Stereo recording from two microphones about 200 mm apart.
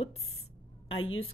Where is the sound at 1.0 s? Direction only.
90° left.